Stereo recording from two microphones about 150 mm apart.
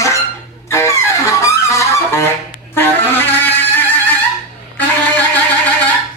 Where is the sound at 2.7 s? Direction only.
15° left (ahead or behind).